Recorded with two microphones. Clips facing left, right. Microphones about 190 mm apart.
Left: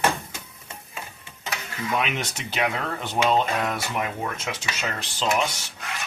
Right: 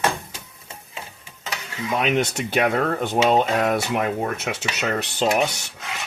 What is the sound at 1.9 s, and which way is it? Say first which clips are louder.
Speech: right 7 dB; 40° right (ahead or behind).